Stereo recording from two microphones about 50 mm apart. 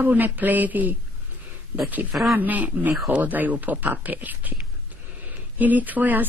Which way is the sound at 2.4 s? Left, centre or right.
Right.